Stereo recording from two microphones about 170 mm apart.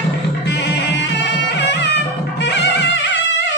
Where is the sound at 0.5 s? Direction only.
90° left.